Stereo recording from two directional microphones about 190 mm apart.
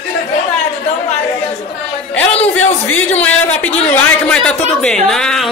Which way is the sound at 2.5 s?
90° left.